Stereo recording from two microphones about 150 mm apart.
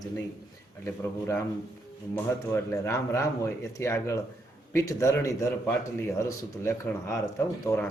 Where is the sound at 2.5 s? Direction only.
20° left (ahead or behind).